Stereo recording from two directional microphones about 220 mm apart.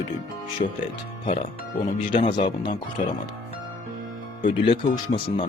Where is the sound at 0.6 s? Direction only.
35° left (ahead or behind).